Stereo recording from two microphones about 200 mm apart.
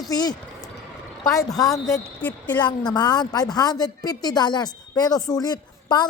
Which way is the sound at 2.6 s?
20° left (ahead or behind).